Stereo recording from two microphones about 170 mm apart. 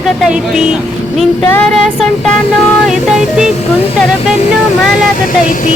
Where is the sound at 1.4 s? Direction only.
5° left (ahead or behind).